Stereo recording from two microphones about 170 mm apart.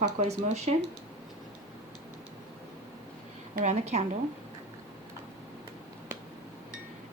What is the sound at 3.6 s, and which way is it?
Speech, 40° right (ahead or behind).